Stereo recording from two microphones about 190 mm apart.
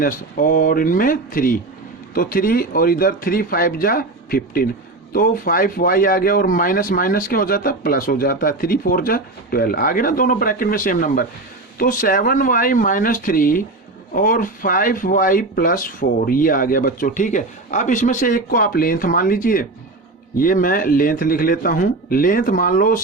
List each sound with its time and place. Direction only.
0.0 s speech: 45° left (ahead or behind)